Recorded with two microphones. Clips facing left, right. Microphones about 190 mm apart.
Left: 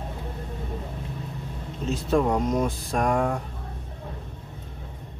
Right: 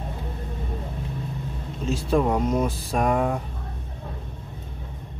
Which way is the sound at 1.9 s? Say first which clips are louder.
Right 1 dB; 5° right (ahead or behind).